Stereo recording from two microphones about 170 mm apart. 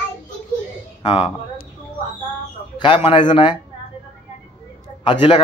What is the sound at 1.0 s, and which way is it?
Speech, 30° left (ahead or behind).